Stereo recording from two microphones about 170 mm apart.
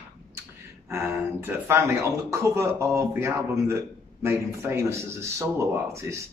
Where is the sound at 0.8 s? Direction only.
15° right (ahead or behind).